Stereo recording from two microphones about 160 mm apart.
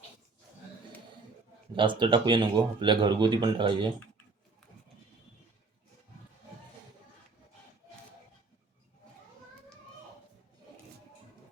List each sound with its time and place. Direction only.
1.7 s speech: 30° right (ahead or behind)